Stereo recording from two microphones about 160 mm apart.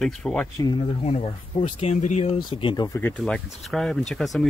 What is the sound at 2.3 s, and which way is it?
Speech, 30° left (ahead or behind).